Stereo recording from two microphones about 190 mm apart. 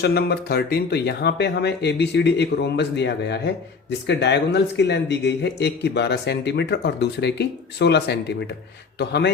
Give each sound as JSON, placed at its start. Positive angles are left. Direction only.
{"t": 0.0, "sound": "speech", "side_deg": 55}